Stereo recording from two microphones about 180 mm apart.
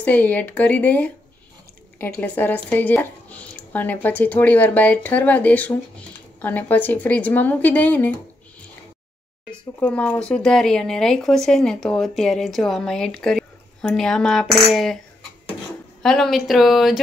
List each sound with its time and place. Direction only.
0.0 s speech: 10° left (ahead or behind)
9.5 s speech: 5° left (ahead or behind)
16.0 s speech: centre (ahead or behind)